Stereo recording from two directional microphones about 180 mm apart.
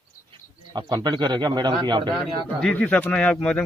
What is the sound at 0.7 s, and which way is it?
Speech, 25° right (ahead or behind).